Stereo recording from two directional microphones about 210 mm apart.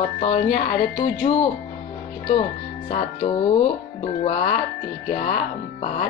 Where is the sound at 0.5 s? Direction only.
50° left (ahead or behind).